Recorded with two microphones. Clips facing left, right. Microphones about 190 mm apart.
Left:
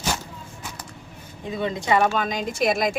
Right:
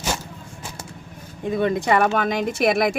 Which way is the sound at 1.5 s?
55° right (ahead or behind).